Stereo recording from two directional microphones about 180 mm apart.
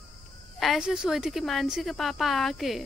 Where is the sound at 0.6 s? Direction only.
Centre (ahead or behind).